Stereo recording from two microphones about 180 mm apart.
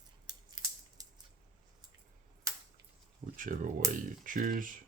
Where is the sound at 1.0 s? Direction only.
20° right (ahead or behind).